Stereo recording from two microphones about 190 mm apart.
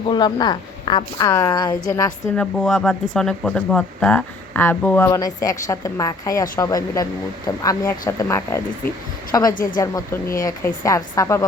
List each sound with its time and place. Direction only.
0.1 s a woman's voice: 25° left (ahead or behind)
2.3 s a woman's voice: 5° left (ahead or behind)